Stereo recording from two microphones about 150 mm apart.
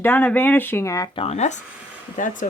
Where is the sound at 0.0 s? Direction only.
15° left (ahead or behind).